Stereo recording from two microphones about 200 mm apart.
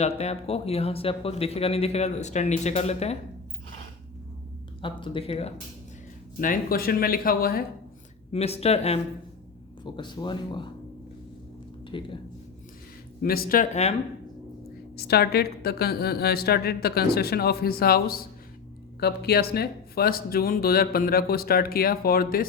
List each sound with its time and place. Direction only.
0.0 s speech: 30° left (ahead or behind)
4.8 s speech: 25° left (ahead or behind)
6.4 s speech: 45° left (ahead or behind)
8.3 s speech: 30° left (ahead or behind)
11.9 s speech: 25° left (ahead or behind)
13.2 s speech: 50° left (ahead or behind)
14.9 s speech: 50° left (ahead or behind)